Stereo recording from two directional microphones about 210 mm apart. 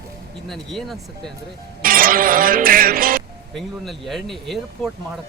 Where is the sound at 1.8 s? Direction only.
45° right (ahead or behind).